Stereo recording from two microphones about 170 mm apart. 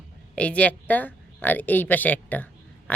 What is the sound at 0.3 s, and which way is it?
A woman's voice, 5° left (ahead or behind).